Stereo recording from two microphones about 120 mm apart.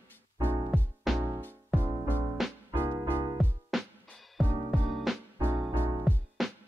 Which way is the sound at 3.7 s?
5° left (ahead or behind).